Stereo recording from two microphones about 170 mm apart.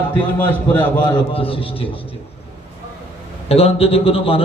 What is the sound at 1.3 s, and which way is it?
Speech, 35° left (ahead or behind).